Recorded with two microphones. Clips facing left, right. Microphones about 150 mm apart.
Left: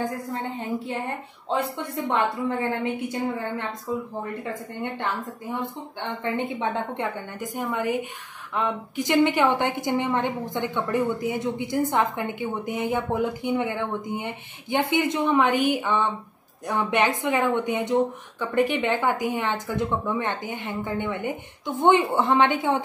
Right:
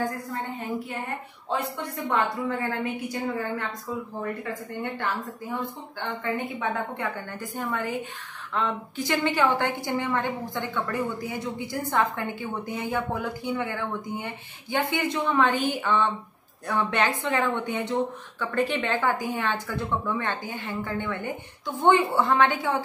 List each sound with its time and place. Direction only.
2.0 s a woman's voice: 25° left (ahead or behind)
5.5 s a woman's voice: 20° left (ahead or behind)